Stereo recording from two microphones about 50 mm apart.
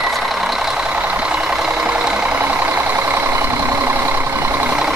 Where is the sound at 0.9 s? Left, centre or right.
Right.